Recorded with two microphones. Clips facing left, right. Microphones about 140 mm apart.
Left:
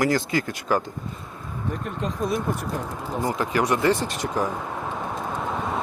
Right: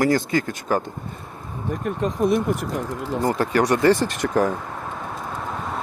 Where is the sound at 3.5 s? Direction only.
35° right (ahead or behind).